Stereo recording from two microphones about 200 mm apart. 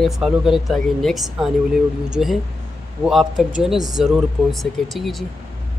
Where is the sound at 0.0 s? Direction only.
Centre (ahead or behind).